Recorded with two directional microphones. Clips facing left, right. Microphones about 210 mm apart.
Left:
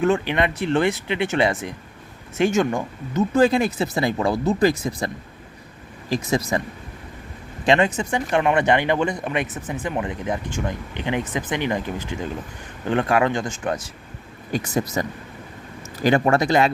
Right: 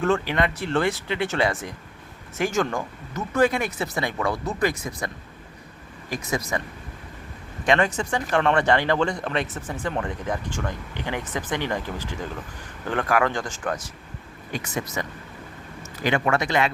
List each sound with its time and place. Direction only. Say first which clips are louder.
0.0 s speech: left 3 dB; 20° left (ahead or behind)
7.6 s speech: left 3 dB; 25° left (ahead or behind)
14.5 s speech: left 6 dB; 35° left (ahead or behind)
16.0 s speech: left 5 dB; 35° left (ahead or behind)